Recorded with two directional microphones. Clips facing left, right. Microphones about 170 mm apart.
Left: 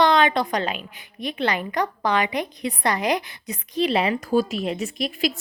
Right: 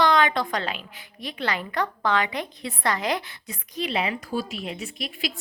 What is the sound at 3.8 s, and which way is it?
A woman's voice, 35° left (ahead or behind).